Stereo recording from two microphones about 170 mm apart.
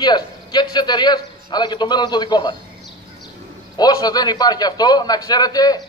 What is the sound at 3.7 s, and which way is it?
A man's voice, 25° left (ahead or behind).